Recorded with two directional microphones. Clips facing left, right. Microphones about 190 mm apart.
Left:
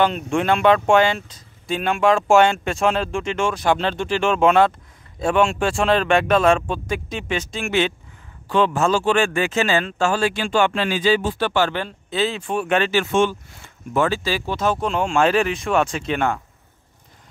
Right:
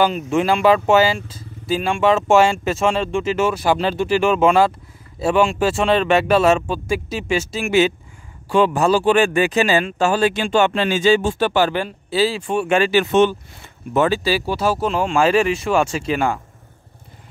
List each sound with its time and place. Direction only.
0.0 s speech: 5° right (ahead or behind); by 11.3 s 25° right (ahead or behind)
11.3 s speech: 15° right (ahead or behind)